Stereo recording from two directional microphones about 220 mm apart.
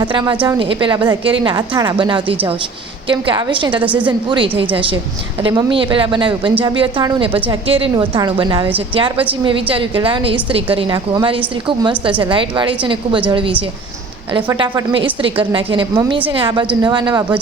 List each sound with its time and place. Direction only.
0.0 s a woman's voice: 20° right (ahead or behind)
14.6 s a woman's voice: 20° right (ahead or behind)